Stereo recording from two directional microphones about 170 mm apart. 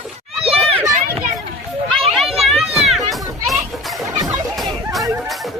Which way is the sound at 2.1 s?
Centre (ahead or behind).